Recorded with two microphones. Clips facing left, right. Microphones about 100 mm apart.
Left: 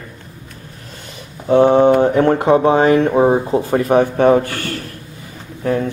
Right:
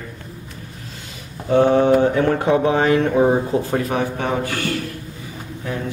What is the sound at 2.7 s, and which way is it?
Speech, 30° left (ahead or behind).